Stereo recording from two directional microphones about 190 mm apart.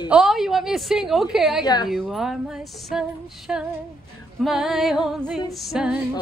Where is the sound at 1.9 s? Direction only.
Centre (ahead or behind).